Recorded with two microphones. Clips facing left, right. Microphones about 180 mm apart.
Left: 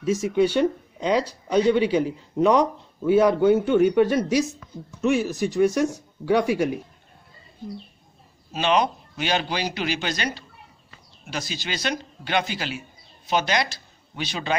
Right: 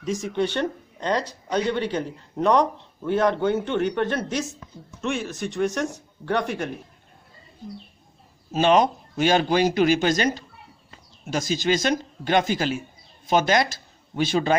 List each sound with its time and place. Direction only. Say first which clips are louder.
0.0 s speech: left 4 dB; 5° left (ahead or behind)
8.5 s speech: right 3 dB; 45° right (ahead or behind)